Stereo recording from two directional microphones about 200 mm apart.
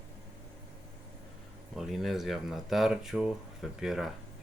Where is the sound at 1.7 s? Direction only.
Centre (ahead or behind).